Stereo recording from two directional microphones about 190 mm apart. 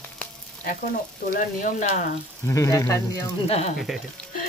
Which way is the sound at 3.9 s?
Centre (ahead or behind).